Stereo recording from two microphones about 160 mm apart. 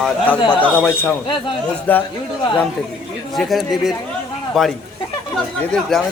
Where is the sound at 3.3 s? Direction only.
Centre (ahead or behind).